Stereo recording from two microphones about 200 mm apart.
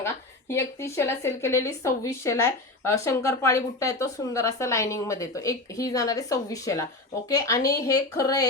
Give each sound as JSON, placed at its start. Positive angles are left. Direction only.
{"t": 0.0, "sound": "a woman's voice", "side_deg": 15}